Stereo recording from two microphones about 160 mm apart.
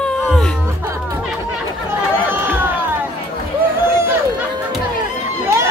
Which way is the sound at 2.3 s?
10° right (ahead or behind).